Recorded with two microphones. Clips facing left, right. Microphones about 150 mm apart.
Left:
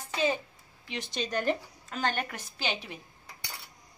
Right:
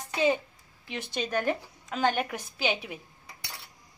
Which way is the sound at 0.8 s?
55° right (ahead or behind).